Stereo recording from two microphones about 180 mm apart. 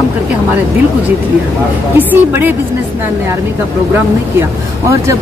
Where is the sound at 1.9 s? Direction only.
10° right (ahead or behind).